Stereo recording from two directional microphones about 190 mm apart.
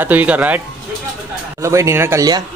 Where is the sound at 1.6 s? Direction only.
15° right (ahead or behind).